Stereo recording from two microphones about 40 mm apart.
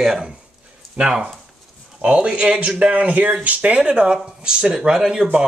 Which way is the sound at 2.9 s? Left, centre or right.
Right.